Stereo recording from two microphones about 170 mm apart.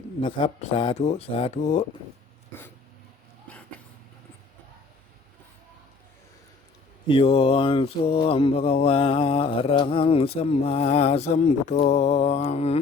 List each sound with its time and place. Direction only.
0.2 s speech: 30° left (ahead or behind)
0.6 s mantra: 30° left (ahead or behind)
0.9 s mantra: 40° left (ahead or behind)
7.1 s mantra: 35° left (ahead or behind)